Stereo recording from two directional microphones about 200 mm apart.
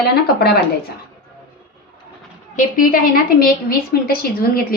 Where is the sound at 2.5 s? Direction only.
40° left (ahead or behind).